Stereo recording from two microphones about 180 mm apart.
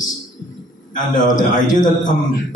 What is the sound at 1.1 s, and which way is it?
Speech, 45° left (ahead or behind).